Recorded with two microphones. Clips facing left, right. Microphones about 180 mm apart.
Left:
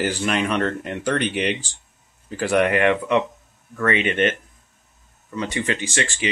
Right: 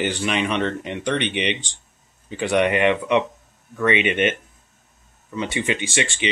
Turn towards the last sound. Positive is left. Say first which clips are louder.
# right 1 dB
turn(degrees=-20)  # may be behind; listen again after turning